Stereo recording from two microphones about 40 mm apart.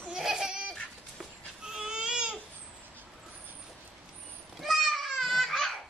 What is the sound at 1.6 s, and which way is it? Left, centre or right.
Baby cry, right.